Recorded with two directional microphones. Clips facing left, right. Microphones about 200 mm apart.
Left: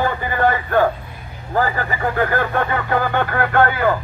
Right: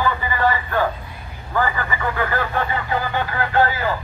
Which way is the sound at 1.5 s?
40° left (ahead or behind).